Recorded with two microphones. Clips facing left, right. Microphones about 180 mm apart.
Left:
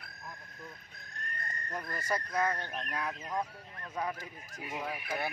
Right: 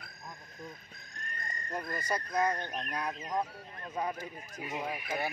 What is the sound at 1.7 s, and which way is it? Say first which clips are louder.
Speech: right 1 dB; 15° right (ahead or behind).